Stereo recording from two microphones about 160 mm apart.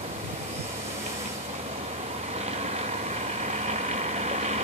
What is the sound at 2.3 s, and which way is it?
Vehicle, 40° right (ahead or behind).